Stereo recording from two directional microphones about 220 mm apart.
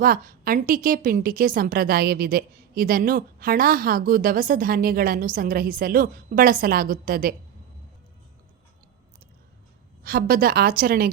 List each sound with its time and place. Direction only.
0.0 s a woman's voice: 40° right (ahead or behind)
10.0 s a woman's voice: 40° right (ahead or behind)